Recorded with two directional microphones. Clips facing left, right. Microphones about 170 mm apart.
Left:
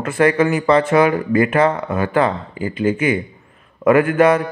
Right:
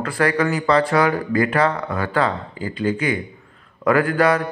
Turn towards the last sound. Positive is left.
turn(degrees=20)  # may be behind; listen again after turning